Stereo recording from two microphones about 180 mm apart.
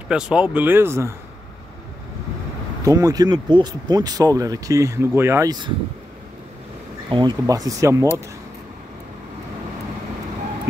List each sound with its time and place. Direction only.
0.1 s speech: 5° right (ahead or behind)
2.8 s speech: 20° right (ahead or behind)
7.1 s speech: 25° right (ahead or behind)